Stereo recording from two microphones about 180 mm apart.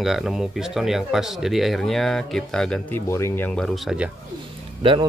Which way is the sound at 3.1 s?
15° left (ahead or behind).